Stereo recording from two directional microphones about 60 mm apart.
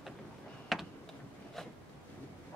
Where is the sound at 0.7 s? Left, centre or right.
Centre.